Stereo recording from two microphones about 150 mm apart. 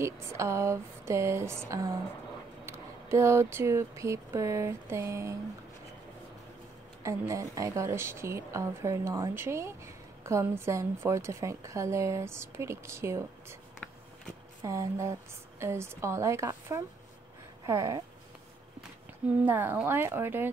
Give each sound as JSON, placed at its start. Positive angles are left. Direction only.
{"t": 0.0, "sound": "a woman's voice", "side_deg": -20}
{"t": 2.6, "sound": "a sound", "side_deg": -20}
{"t": 7.0, "sound": "a woman's voice", "side_deg": -20}
{"t": 13.8, "sound": "a sound", "side_deg": 10}
{"t": 14.6, "sound": "a woman's voice", "side_deg": -20}
{"t": 19.4, "sound": "speech", "side_deg": -10}